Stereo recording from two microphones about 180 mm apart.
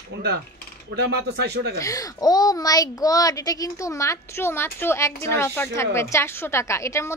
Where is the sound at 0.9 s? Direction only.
70° right (ahead or behind).